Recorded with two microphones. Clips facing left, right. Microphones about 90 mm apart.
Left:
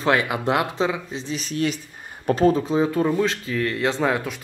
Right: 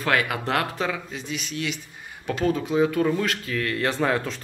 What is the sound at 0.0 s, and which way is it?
Speech, 25° left (ahead or behind).